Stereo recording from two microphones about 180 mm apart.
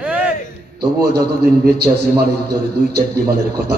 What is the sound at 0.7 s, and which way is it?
A man's voice, 65° right (ahead or behind).